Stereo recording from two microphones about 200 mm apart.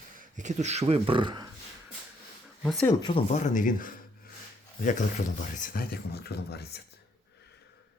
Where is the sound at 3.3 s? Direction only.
40° left (ahead or behind).